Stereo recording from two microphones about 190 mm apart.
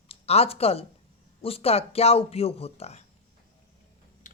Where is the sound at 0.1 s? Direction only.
30° left (ahead or behind).